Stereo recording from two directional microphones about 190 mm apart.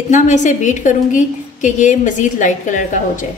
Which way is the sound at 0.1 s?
40° left (ahead or behind).